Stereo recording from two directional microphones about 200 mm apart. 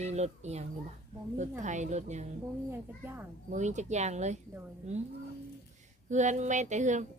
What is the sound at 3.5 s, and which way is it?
Speech, 35° right (ahead or behind).